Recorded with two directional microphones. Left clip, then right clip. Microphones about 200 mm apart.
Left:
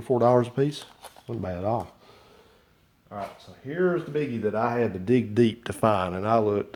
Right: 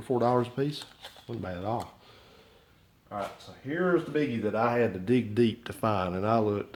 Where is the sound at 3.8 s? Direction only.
30° left (ahead or behind); by 6.7 s 45° left (ahead or behind).